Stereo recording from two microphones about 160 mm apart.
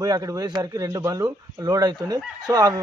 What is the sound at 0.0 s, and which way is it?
A man's voice, 20° right (ahead or behind).